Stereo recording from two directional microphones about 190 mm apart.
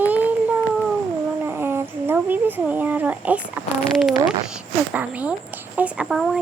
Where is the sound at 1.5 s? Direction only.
10° right (ahead or behind).